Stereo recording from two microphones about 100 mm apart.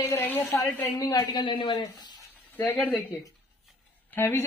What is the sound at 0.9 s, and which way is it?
Speech, 40° left (ahead or behind).